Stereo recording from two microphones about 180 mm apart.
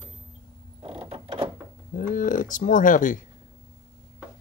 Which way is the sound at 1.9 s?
45° left (ahead or behind).